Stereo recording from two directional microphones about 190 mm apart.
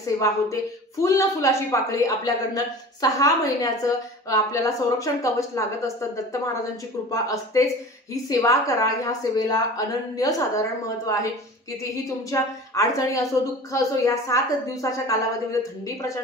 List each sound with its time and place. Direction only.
1.0 s a man's voice: 15° left (ahead or behind)